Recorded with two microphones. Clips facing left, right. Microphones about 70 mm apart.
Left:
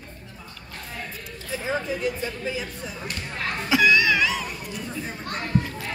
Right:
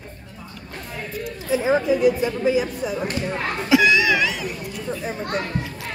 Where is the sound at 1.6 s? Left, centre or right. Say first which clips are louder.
Right 9 dB; centre.